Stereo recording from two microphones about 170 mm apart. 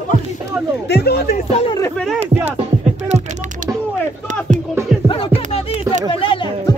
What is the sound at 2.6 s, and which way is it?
Music, 40° right (ahead or behind).